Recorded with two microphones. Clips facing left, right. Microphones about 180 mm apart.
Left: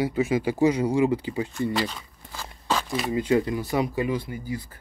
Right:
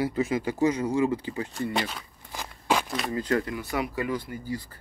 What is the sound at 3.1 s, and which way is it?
Speech, 15° left (ahead or behind).